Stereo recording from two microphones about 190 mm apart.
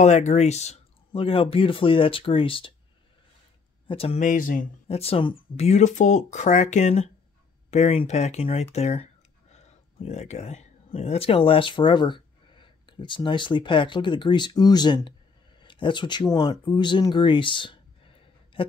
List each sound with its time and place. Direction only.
0.0 s speech: 40° left (ahead or behind)
3.8 s speech: 30° left (ahead or behind)
4.2 s speech: 45° left (ahead or behind)
4.8 s speech: 30° left (ahead or behind)
16.6 s a sound: 25° left (ahead or behind)